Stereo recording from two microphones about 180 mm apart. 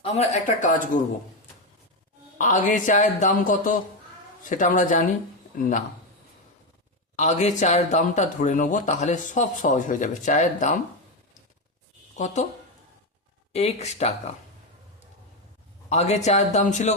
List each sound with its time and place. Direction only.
0.0 s speech: 40° left (ahead or behind)
2.4 s speech: 45° left (ahead or behind)
7.2 s speech: 40° left (ahead or behind)
12.1 s speech: 40° left (ahead or behind)
13.5 s speech: 35° left (ahead or behind)
15.9 s speech: 40° left (ahead or behind)